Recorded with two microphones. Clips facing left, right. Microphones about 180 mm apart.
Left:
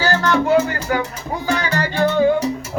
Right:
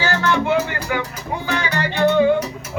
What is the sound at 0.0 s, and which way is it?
Music, 40° left (ahead or behind).